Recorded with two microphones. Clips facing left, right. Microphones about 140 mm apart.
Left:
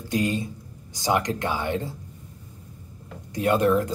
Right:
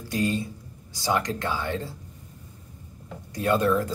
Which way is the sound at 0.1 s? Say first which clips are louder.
Left 1 dB; 20° left (ahead or behind).